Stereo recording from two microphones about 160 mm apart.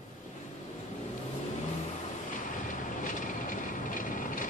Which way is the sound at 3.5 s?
55° left (ahead or behind).